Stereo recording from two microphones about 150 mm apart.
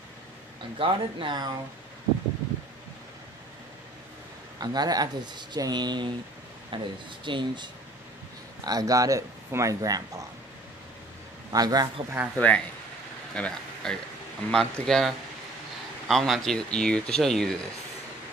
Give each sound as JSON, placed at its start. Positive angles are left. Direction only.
{"t": 0.7, "sound": "speech", "side_deg": -35}
{"t": 4.6, "sound": "speech", "side_deg": -25}
{"t": 11.5, "sound": "speech", "side_deg": -25}
{"t": 12.4, "sound": "speech", "side_deg": 10}